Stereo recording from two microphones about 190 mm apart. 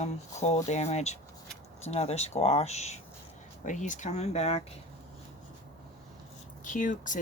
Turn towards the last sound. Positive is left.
turn(degrees=45)  # may be behind; listen again after turning